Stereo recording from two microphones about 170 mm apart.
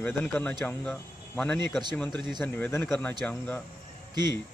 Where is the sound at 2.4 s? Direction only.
15° left (ahead or behind).